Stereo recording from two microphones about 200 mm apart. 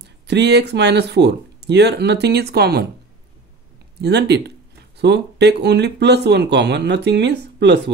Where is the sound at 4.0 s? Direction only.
55° right (ahead or behind).